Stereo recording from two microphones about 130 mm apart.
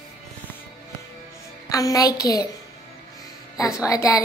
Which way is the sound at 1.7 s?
25° left (ahead or behind).